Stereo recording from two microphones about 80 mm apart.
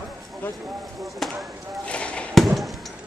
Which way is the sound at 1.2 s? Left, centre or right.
Centre.